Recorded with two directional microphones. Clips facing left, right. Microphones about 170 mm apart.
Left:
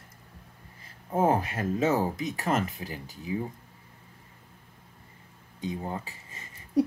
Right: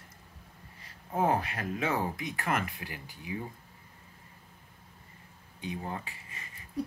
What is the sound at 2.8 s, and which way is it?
Speech, 40° left (ahead or behind).